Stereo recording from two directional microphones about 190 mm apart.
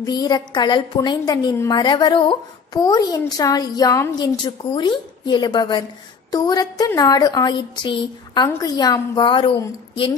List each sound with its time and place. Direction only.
0.0 s a woman's voice: 20° left (ahead or behind)